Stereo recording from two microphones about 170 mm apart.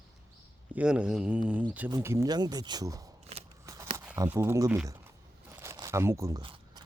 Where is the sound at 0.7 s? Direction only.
5° right (ahead or behind).